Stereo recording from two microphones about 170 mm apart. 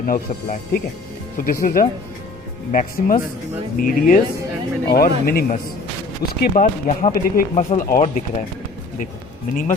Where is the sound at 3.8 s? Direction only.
50° left (ahead or behind).